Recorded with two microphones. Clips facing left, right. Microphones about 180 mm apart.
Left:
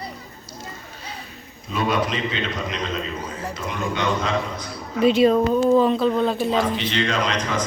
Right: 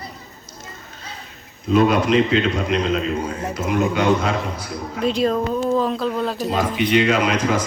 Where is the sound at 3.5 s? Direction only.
5° right (ahead or behind).